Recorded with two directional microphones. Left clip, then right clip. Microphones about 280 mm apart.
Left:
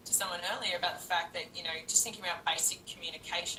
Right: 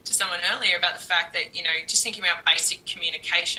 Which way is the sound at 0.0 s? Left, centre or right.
Right.